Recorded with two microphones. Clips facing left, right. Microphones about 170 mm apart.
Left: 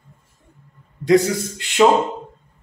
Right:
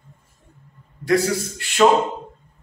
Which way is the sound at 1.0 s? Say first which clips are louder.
Left 4 dB; 20° left (ahead or behind).